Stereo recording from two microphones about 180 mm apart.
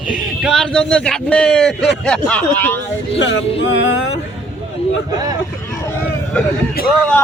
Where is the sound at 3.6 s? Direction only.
90° left.